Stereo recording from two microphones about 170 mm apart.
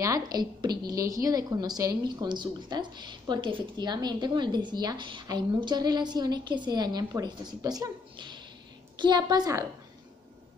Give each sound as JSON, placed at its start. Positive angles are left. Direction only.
{"t": 0.0, "sound": "a woman's voice", "side_deg": -20}